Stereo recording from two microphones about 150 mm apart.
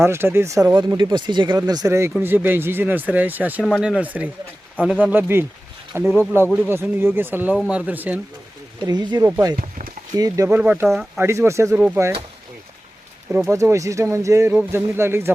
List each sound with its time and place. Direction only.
0.0 s speech: 15° right (ahead or behind)
8.8 s speech: 30° right (ahead or behind)
9.6 s a sound: 70° right (ahead or behind)
10.2 s speech: 25° right (ahead or behind)
10.6 s speech: 10° right (ahead or behind)
11.7 s speech: 10° right (ahead or behind)
13.5 s speech: 20° right (ahead or behind)